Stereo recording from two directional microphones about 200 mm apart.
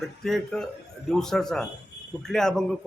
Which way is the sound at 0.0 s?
Centre (ahead or behind).